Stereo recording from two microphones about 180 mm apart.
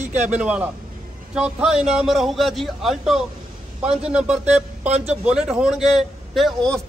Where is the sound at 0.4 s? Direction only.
5° right (ahead or behind).